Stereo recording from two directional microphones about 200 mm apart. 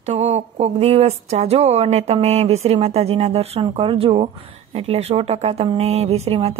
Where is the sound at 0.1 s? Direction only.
35° right (ahead or behind).